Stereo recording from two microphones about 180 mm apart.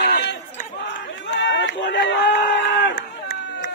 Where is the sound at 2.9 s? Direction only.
75° left (ahead or behind).